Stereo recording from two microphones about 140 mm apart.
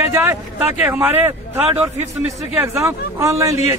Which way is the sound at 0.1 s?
15° right (ahead or behind).